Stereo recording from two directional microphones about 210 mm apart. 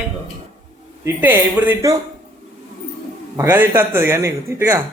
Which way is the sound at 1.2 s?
10° right (ahead or behind).